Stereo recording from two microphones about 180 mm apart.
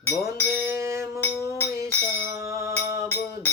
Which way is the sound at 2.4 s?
15° right (ahead or behind).